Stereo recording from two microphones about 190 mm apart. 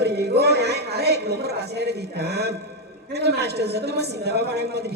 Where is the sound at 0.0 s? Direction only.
60° right (ahead or behind).